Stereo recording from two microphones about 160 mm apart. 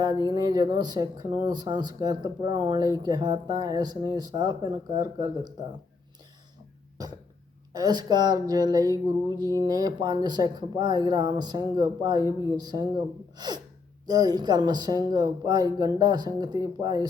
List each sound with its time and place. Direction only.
0.0 s speech: 25° right (ahead or behind)
7.7 s speech: 25° right (ahead or behind)
13.3 s gasp: 25° right (ahead or behind)
14.1 s speech: 25° right (ahead or behind)